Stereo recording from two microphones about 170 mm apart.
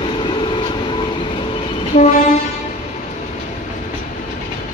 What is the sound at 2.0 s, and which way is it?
Train, 45° left (ahead or behind).